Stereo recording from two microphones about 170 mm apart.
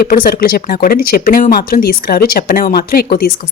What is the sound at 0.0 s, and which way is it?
Speech, 60° left (ahead or behind).